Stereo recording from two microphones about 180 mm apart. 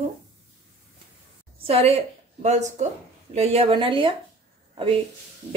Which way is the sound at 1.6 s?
30° right (ahead or behind).